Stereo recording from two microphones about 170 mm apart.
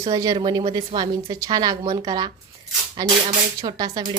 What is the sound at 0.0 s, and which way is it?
A woman's voice, 25° right (ahead or behind).